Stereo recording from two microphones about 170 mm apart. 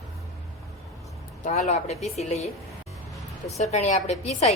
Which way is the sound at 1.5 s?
45° left (ahead or behind).